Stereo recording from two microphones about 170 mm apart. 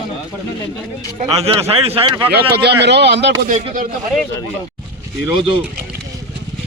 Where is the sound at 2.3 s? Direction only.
80° right.